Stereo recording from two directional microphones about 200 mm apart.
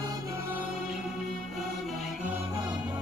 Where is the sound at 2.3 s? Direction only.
10° right (ahead or behind).